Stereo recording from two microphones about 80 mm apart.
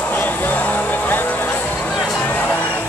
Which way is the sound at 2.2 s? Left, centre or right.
Left.